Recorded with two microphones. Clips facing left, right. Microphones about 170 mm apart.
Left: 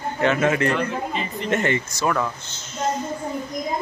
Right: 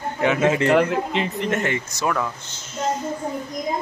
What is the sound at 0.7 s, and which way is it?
Speech, 80° right.